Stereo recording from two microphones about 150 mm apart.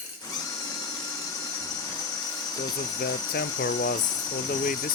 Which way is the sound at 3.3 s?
90° left.